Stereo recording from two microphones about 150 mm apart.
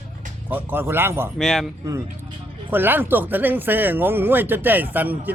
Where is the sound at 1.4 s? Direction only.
5° left (ahead or behind).